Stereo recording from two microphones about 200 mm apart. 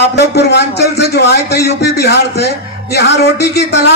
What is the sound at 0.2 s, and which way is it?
A man's voice, 55° left (ahead or behind).